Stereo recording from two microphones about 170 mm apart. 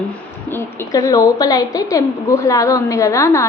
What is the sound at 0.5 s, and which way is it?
A woman's voice, 20° left (ahead or behind).